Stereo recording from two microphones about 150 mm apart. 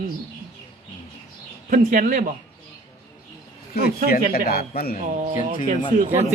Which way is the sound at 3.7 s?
90° left.